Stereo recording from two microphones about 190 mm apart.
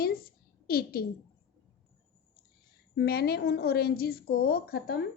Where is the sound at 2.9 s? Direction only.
55° left (ahead or behind).